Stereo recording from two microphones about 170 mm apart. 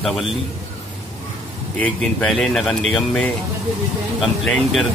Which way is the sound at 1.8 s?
5° left (ahead or behind).